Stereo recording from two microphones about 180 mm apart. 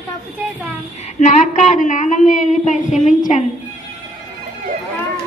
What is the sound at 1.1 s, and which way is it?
A woman's voice, 40° left (ahead or behind).